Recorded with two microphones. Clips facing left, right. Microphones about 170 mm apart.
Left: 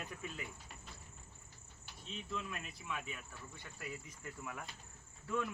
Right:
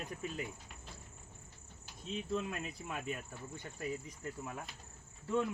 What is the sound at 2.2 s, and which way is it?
Speech, 40° right (ahead or behind).